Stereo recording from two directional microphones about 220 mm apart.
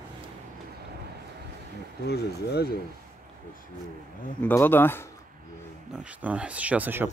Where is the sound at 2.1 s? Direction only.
45° left (ahead or behind).